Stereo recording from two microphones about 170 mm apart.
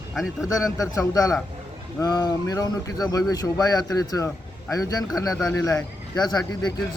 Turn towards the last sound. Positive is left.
turn(degrees=25)  # may be behind; listen again after turning